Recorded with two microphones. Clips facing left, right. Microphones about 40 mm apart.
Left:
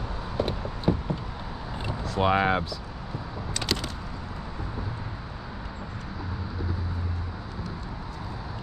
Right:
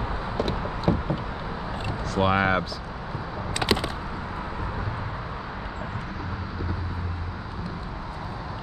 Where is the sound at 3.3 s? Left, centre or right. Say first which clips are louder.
Right 6 dB; centre; by 6.2 s right.